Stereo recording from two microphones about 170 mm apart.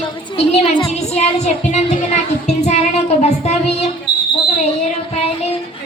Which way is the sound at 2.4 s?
40° left (ahead or behind).